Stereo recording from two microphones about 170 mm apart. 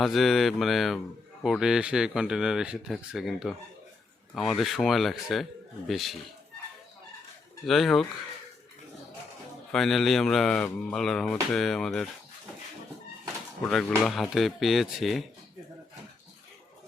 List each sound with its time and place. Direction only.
0.0 s speech: centre (ahead or behind)
7.6 s speech: centre (ahead or behind)
9.7 s speech: centre (ahead or behind)
13.7 s speech: centre (ahead or behind)